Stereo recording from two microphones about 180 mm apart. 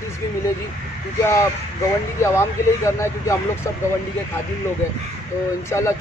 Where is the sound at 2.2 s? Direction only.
15° left (ahead or behind).